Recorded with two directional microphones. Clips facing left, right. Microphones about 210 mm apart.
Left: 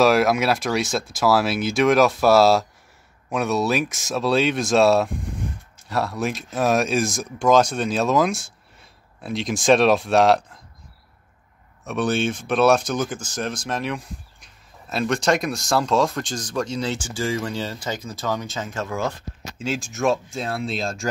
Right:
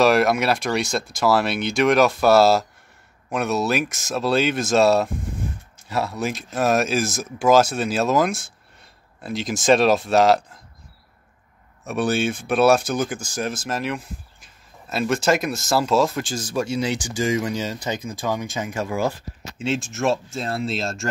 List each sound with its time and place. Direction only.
0.0 s speech: centre (ahead or behind)
11.8 s speech: 10° right (ahead or behind)
19.6 s speech: centre (ahead or behind)